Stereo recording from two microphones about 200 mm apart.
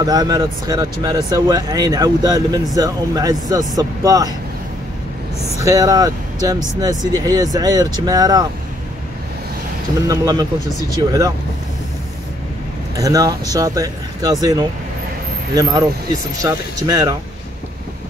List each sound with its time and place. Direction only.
0.0 s speech: 20° right (ahead or behind)
5.6 s speech: 15° right (ahead or behind)
10.0 s speech: 20° right (ahead or behind)
12.9 s speech: 15° right (ahead or behind)
16.3 s speech: 15° right (ahead or behind)